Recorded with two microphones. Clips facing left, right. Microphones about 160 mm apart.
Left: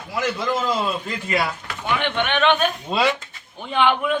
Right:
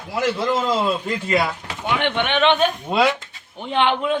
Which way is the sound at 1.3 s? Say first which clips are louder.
Right 2 dB; 20° right (ahead or behind).